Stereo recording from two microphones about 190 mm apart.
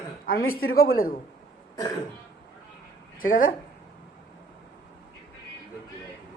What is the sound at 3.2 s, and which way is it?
Speech, 45° left (ahead or behind).